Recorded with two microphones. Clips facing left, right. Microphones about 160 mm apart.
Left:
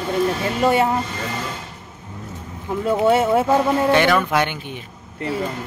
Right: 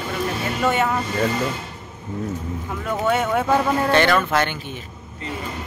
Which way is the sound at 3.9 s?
10° left (ahead or behind).